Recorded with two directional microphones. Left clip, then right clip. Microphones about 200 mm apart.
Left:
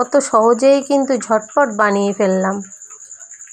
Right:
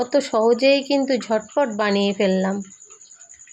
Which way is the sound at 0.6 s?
40° left (ahead or behind).